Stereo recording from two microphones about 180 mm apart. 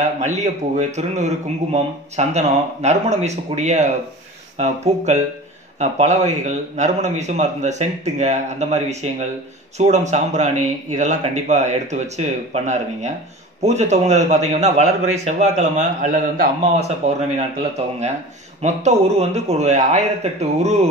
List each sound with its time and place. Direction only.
0.0 s a man's voice: 40° right (ahead or behind)